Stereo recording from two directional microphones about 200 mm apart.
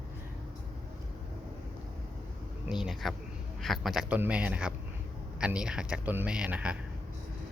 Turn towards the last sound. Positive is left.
turn(degrees=-5)  # may be behind; listen again after turning